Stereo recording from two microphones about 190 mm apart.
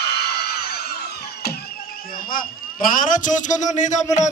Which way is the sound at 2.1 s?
50° left (ahead or behind).